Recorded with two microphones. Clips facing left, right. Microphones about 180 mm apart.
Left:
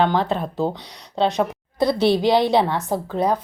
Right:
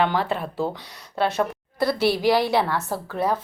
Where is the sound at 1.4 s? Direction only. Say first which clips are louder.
Left 3 dB; 20° left (ahead or behind).